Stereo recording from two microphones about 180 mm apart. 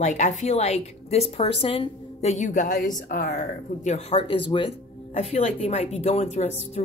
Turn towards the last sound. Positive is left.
turn(degrees=35)  # may be behind; listen again after turning